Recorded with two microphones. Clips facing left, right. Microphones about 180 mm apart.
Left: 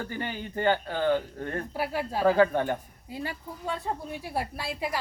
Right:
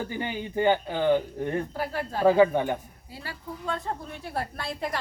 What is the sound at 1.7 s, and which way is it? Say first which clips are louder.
Speech: left 1 dB; 10° left (ahead or behind).